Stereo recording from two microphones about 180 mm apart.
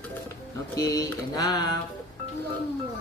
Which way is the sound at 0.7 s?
20° left (ahead or behind).